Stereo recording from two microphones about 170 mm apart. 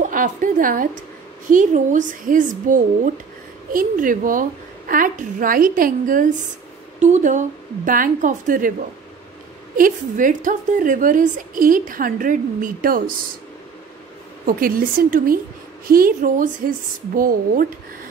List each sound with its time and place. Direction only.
0.0 s a woman's voice: 50° right (ahead or behind)
9.8 s a woman's voice: 50° right (ahead or behind)
14.4 s a woman's voice: 55° right (ahead or behind)